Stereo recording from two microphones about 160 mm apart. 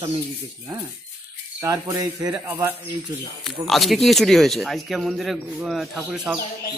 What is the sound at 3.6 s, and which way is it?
A man's voice, centre (ahead or behind).